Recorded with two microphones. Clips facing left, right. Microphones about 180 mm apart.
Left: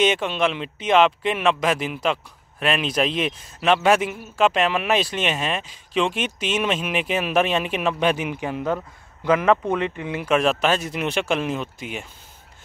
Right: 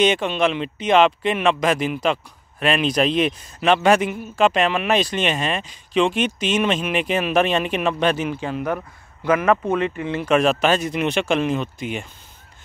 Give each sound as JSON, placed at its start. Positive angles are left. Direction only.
{"t": 0.0, "sound": "a man's voice", "side_deg": 0}